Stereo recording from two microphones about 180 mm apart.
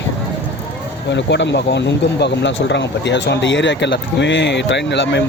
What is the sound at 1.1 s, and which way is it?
Speech, 80° left.